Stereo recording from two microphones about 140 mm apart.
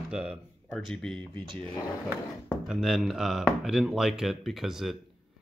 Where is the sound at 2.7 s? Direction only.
5° right (ahead or behind).